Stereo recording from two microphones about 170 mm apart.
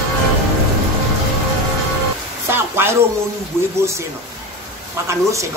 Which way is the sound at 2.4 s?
15° right (ahead or behind).